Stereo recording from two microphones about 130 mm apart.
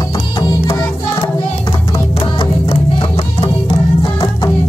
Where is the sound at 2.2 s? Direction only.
40° left (ahead or behind).